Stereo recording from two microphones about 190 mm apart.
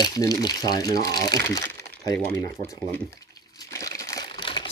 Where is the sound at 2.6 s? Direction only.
15° left (ahead or behind).